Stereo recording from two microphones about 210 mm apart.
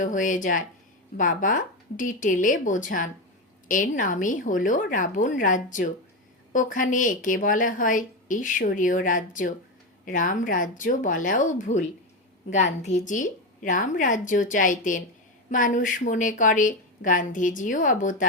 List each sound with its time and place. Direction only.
0.0 s a woman's voice: 40° left (ahead or behind)